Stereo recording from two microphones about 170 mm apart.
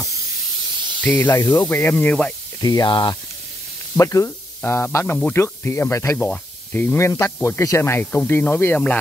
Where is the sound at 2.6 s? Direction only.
20° left (ahead or behind).